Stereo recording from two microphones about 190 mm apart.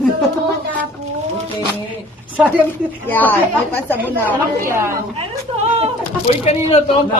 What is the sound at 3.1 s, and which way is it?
Speech, 10° left (ahead or behind).